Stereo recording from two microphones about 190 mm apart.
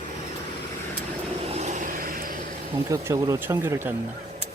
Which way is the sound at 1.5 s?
40° right (ahead or behind).